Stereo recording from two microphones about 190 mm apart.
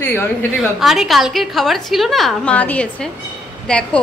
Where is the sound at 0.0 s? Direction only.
10° left (ahead or behind).